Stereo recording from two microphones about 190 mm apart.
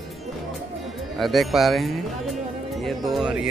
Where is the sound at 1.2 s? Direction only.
Centre (ahead or behind).